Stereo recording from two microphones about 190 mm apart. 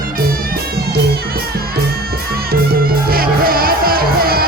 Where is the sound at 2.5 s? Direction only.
50° right (ahead or behind).